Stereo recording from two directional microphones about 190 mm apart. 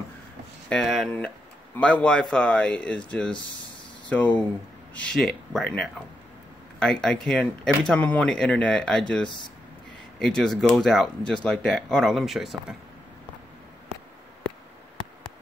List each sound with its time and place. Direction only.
0.7 s speech: centre (ahead or behind)
10.1 s speech: 5° left (ahead or behind)